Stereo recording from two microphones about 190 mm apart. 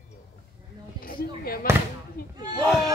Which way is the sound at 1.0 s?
50° left (ahead or behind).